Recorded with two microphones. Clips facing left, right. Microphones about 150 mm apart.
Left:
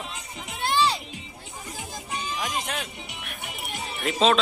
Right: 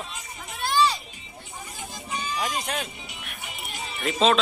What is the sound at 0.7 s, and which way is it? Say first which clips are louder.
Music: right 1 dB; 25° left (ahead or behind).